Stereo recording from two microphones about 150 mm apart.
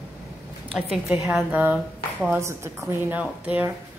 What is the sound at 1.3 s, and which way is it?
A woman's voice, 10° right (ahead or behind).